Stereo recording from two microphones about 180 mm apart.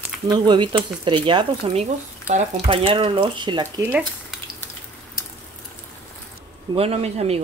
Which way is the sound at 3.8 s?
10° right (ahead or behind).